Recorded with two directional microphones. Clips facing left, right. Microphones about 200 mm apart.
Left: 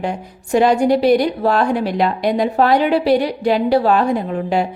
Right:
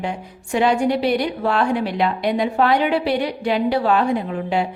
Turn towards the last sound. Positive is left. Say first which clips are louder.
# left 3 dB
turn(degrees=40)  # may be behind; listen again after turning